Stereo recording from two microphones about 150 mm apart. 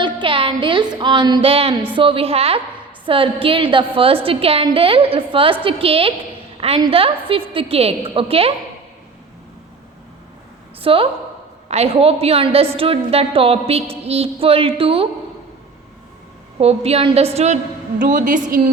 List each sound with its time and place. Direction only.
0.0 s music: 35° right (ahead or behind)
6.6 s a woman's voice: 40° right (ahead or behind)
6.9 s music: 40° right (ahead or behind)
10.8 s music: 35° right (ahead or behind)
16.6 s a woman's voice: 45° right (ahead or behind)
18.0 s a woman's voice: 65° right (ahead or behind)